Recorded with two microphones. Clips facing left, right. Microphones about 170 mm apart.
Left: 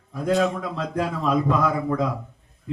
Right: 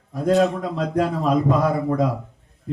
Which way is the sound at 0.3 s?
35° right (ahead or behind).